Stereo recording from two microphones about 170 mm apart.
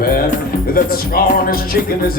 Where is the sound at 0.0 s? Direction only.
60° left (ahead or behind).